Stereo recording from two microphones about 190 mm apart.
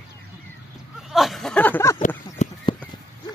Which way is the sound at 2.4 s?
40° left (ahead or behind).